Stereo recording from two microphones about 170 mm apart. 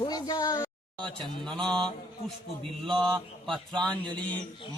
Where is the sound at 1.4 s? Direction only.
5° left (ahead or behind).